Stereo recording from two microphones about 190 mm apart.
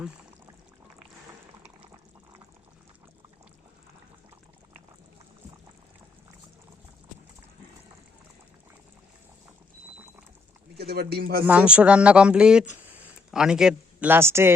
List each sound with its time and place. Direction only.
10.8 s speech: 55° right (ahead or behind)
11.4 s speech: 5° right (ahead or behind)